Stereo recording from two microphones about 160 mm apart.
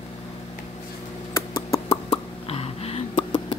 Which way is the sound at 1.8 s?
40° left (ahead or behind).